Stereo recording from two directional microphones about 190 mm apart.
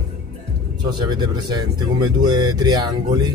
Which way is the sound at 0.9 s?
20° right (ahead or behind).